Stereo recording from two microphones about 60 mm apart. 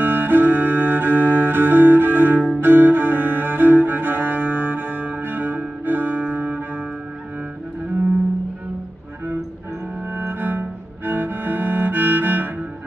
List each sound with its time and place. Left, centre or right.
0.0 s music: right
2.6 s cello: right
10.1 s music: right
11.1 s cello: right